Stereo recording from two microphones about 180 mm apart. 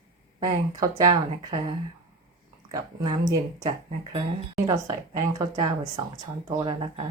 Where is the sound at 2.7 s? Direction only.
20° right (ahead or behind).